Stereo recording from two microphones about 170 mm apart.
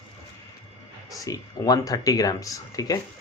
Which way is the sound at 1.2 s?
20° left (ahead or behind).